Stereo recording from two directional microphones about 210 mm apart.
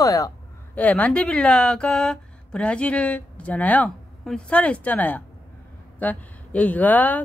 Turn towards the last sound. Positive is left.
turn(degrees=10)  # may be behind; listen again after turning